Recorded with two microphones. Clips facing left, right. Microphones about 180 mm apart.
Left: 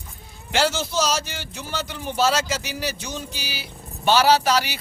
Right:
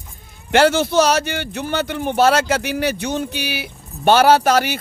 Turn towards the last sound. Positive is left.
turn(degrees=-50)  # may be behind; listen again after turning